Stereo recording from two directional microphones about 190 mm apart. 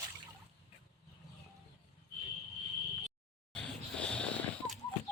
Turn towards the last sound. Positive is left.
turn(degrees=5)  # may be behind; listen again after turning